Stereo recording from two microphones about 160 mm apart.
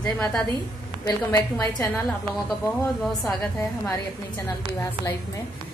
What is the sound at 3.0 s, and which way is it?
Speech, centre (ahead or behind).